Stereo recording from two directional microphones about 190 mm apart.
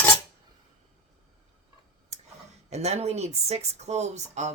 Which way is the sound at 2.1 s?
35° right (ahead or behind).